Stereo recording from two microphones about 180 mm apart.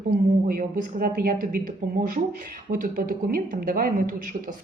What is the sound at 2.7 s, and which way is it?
Speech, 50° right (ahead or behind).